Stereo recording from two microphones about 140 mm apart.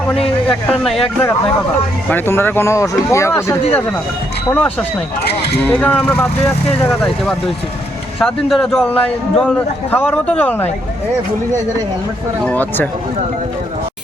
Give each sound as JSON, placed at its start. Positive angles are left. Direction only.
{"t": 0.1, "sound": "a man's voice", "side_deg": 5}
{"t": 8.2, "sound": "a man's voice", "side_deg": 0}
{"t": 12.5, "sound": "a man's voice", "side_deg": 10}